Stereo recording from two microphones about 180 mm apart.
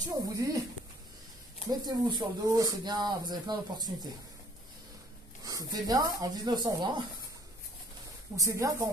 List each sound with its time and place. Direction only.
0.3 s speech: 20° right (ahead or behind)
1.7 s speech: 25° right (ahead or behind)
5.4 s speech: 20° right (ahead or behind)
8.4 s speech: 20° right (ahead or behind)